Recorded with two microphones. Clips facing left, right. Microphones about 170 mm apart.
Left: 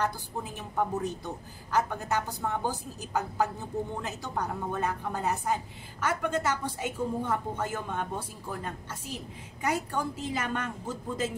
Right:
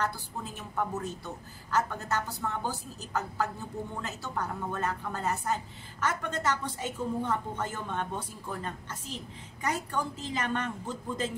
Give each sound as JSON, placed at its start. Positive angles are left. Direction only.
{"t": 0.0, "sound": "a woman's voice", "side_deg": 15}